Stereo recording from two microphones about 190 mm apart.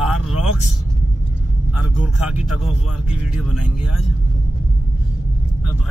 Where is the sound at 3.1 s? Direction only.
5° right (ahead or behind).